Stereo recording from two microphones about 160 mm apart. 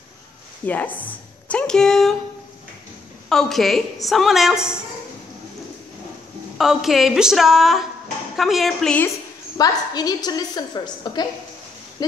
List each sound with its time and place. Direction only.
0.7 s a woman's voice: 10° left (ahead or behind)
3.3 s a woman's voice: centre (ahead or behind)
6.6 s a woman's voice: centre (ahead or behind)
9.6 s a woman's voice: 25° left (ahead or behind)